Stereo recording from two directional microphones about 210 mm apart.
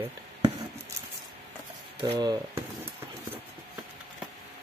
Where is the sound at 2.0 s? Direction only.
25° right (ahead or behind).